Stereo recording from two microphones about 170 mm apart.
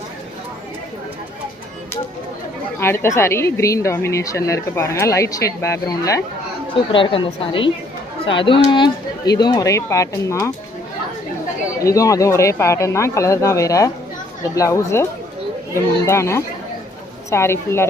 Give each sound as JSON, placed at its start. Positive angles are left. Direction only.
{"t": 2.8, "sound": "speech", "side_deg": 15}
{"t": 6.9, "sound": "a woman's voice", "side_deg": 30}
{"t": 11.8, "sound": "speech", "side_deg": 20}
{"t": 16.0, "sound": "speech", "side_deg": 15}